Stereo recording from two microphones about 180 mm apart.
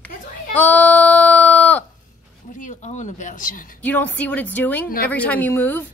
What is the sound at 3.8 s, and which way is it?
Speech, 10° left (ahead or behind).